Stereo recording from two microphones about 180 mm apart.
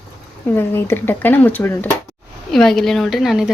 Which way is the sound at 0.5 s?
15° left (ahead or behind).